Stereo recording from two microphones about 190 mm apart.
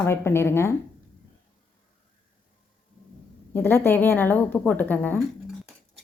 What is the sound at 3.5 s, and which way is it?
A woman's voice, 10° left (ahead or behind).